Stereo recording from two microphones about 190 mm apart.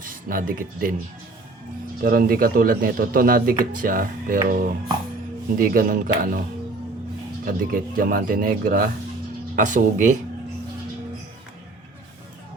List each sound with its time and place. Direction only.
0.0 s speech: 45° right (ahead or behind)
2.0 s a man's voice: 50° right (ahead or behind)
7.4 s a man's voice: 50° right (ahead or behind)